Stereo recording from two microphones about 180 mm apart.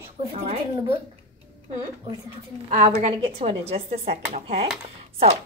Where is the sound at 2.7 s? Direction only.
45° right (ahead or behind).